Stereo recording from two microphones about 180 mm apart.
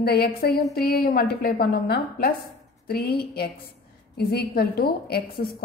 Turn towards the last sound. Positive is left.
turn(degrees=60)  # may be behind; listen again after turning